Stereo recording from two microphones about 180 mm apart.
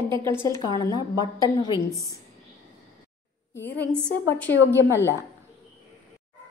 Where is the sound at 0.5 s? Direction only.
20° left (ahead or behind).